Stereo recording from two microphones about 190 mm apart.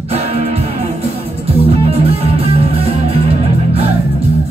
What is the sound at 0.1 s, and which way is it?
Music, 35° right (ahead or behind).